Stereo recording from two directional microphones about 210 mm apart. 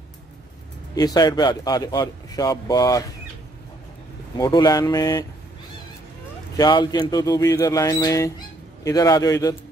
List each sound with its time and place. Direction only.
0.9 s a man's voice: 20° left (ahead or behind)
4.4 s a man's voice: 20° left (ahead or behind)
6.5 s a man's voice: 20° left (ahead or behind)